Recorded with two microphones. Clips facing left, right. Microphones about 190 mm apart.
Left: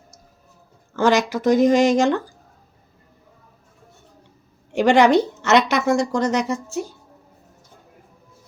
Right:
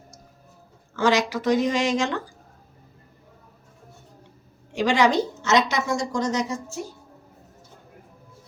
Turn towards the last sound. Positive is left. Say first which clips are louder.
# left 5 dB
turn(degrees=65)  # may be behind; listen again after turning